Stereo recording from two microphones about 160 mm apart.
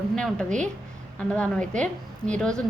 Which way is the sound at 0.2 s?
5° left (ahead or behind).